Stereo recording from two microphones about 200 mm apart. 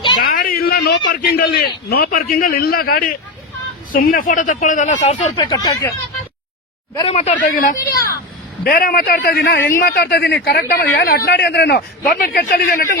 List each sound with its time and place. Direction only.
0.2 s a man's voice: 45° left (ahead or behind); by 5.9 s 15° left (ahead or behind)
6.9 s speech: 30° left (ahead or behind)
7.4 s a man's voice: 40° left (ahead or behind)